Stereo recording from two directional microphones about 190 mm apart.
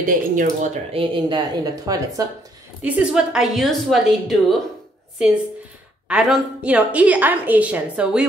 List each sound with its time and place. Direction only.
0.0 s speech: 45° right (ahead or behind)
0.9 s a woman's voice: 25° right (ahead or behind)
2.8 s a woman's voice: 5° right (ahead or behind)
6.0 s a woman's voice: 5° right (ahead or behind)